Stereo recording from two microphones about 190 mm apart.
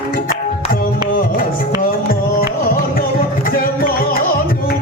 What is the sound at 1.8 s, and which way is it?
Music, 50° left (ahead or behind).